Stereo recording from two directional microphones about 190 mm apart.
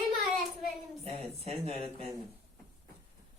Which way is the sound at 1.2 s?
30° right (ahead or behind).